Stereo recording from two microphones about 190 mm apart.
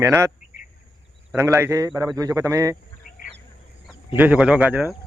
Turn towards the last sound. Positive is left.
turn(degrees=-10)  # may be behind; listen again after turning